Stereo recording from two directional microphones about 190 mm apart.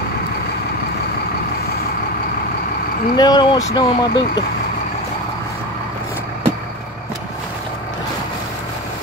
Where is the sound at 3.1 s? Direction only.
25° left (ahead or behind).